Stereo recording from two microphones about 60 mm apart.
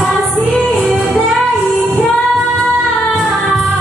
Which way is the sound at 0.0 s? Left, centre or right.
Centre.